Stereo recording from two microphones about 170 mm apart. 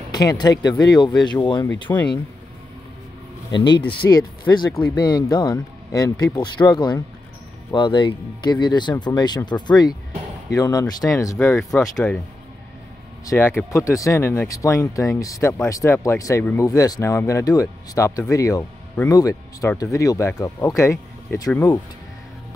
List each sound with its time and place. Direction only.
0.1 s speech: 25° left (ahead or behind)
3.5 s speech: 25° left (ahead or behind)
11.7 s speech: 10° left (ahead or behind)
13.2 s speech: 15° left (ahead or behind)